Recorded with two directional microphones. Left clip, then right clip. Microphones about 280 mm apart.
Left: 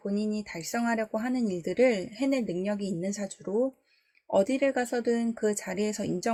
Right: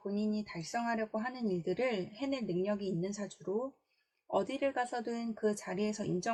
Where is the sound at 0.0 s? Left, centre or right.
Left.